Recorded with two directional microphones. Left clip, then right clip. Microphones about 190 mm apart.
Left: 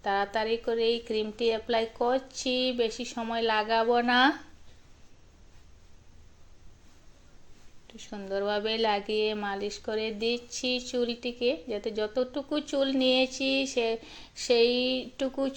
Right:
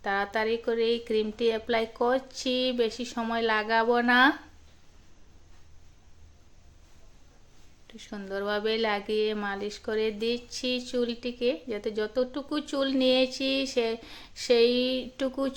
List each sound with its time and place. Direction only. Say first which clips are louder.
0.0 s a woman's voice: even; 15° right (ahead or behind)
7.9 s a woman's voice: left 2 dB; 15° right (ahead or behind)